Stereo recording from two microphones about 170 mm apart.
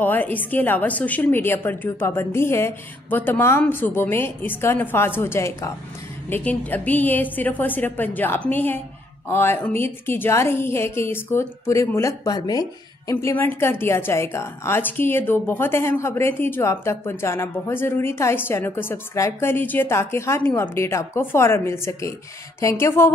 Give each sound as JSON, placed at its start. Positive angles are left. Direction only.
{"t": 0.0, "sound": "a woman's voice", "side_deg": 10}